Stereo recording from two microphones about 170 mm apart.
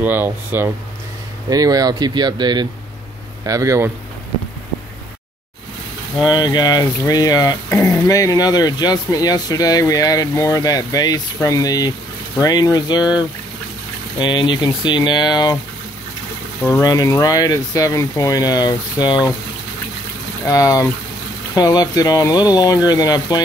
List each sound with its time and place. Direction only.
0.0 s speech: 10° right (ahead or behind)
6.2 s speech: 25° left (ahead or behind)
14.2 s speech: 25° left (ahead or behind)
16.6 s speech: 20° left (ahead or behind)
20.4 s speech: 20° left (ahead or behind)